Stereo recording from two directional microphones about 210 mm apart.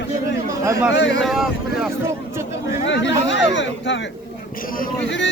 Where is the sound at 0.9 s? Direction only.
60° left (ahead or behind).